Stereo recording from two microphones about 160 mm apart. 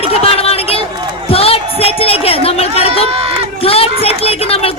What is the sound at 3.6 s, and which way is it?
A man's voice, 35° left (ahead or behind).